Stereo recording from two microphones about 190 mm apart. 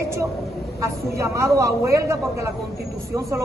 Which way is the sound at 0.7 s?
15° right (ahead or behind).